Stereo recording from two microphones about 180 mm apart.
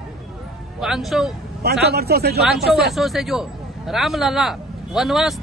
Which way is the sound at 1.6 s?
60° right (ahead or behind).